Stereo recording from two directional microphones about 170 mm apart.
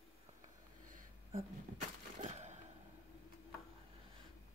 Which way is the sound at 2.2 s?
45° right (ahead or behind).